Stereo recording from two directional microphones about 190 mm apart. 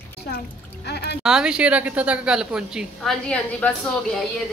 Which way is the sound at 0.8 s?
60° left (ahead or behind).